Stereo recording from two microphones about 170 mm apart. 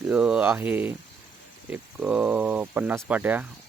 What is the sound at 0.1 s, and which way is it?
Speech, 5° right (ahead or behind).